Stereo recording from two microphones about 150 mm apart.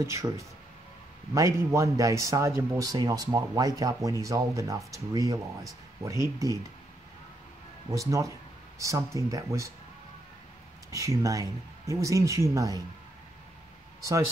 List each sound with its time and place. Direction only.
0.0 s a man's voice: 20° right (ahead or behind)
7.9 s a man's voice: 20° right (ahead or behind)
10.9 s a man's voice: 20° right (ahead or behind)